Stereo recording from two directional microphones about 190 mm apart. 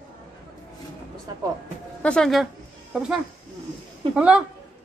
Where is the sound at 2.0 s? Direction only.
5° left (ahead or behind).